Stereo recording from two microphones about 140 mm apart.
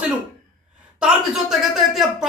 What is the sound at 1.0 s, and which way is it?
Speech, 5° right (ahead or behind).